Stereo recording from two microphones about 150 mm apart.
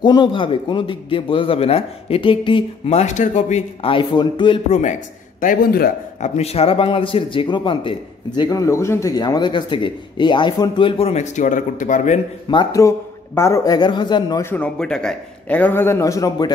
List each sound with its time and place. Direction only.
0.0 s a man's voice: 30° left (ahead or behind)
4.6 s a man's voice: 50° left (ahead or behind)
5.4 s a man's voice: 70° left (ahead or behind)
6.2 s a man's voice: 45° left (ahead or behind)
8.4 s a man's voice: 20° left (ahead or behind); by 12.2 s 55° left (ahead or behind)
12.4 s a man's voice: 25° left (ahead or behind)
14.4 s a man's voice: 10° left (ahead or behind); by 16.5 s 25° left (ahead or behind)